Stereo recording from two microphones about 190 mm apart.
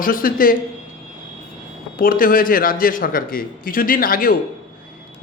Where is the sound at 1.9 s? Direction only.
50° left (ahead or behind).